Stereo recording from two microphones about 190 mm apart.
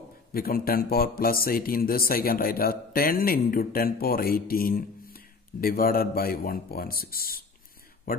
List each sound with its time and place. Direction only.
0.3 s speech: 50° left (ahead or behind)